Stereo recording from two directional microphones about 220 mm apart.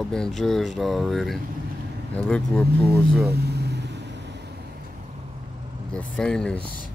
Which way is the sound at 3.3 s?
45° right (ahead or behind).